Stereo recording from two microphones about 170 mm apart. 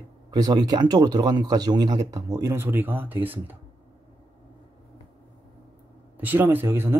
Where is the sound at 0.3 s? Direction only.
25° right (ahead or behind).